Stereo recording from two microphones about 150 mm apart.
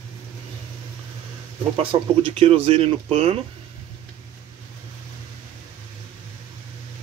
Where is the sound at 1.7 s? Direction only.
35° right (ahead or behind).